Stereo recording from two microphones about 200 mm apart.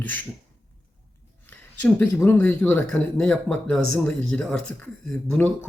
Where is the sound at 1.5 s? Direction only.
10° left (ahead or behind).